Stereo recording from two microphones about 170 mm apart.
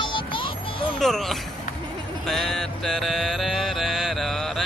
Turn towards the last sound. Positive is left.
turn(degrees=0)  # may be behind; listen again after turning